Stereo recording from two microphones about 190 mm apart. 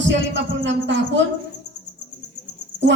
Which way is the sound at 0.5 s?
75° right (ahead or behind).